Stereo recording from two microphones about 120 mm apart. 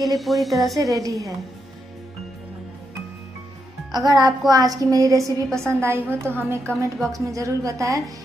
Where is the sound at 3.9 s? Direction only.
35° right (ahead or behind).